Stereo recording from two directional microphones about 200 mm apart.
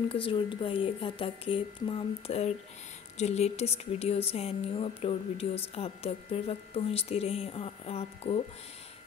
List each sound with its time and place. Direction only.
0.1 s speech: 25° left (ahead or behind)